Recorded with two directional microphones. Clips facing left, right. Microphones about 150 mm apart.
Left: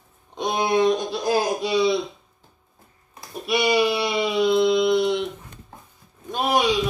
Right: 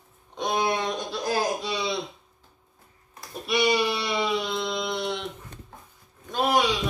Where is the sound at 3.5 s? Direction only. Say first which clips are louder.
Left 3 dB; 10° left (ahead or behind).